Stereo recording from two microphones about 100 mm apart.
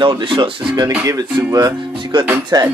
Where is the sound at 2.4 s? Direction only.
45° right (ahead or behind).